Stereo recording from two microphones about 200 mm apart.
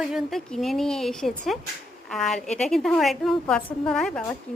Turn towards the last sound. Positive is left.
turn(degrees=5)  # may be behind; listen again after turning